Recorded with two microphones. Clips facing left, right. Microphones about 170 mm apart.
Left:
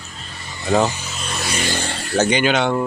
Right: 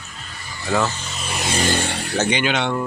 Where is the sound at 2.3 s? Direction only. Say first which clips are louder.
Left 4 dB; 45° left (ahead or behind).